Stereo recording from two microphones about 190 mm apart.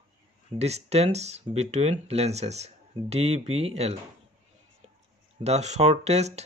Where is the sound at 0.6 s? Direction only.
35° right (ahead or behind).